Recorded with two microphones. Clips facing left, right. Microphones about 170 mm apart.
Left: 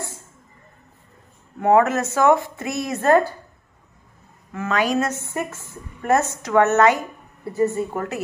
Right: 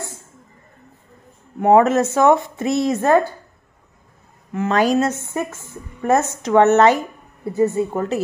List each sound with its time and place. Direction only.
1.6 s speech: 20° right (ahead or behind)
4.6 s speech: 35° right (ahead or behind)
5.1 s a woman's voice: 15° right (ahead or behind)